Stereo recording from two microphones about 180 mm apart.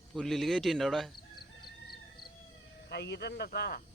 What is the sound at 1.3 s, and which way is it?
Chicken, 60° left (ahead or behind).